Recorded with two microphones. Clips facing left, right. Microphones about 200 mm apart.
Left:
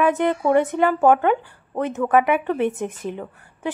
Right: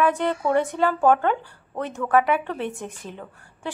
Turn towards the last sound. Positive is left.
turn(degrees=20)  # may be behind; listen again after turning